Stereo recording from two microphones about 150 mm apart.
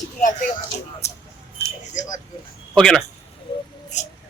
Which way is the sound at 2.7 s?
5° left (ahead or behind).